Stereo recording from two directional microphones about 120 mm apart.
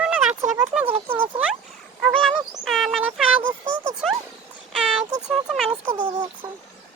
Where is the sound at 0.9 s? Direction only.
55° right (ahead or behind).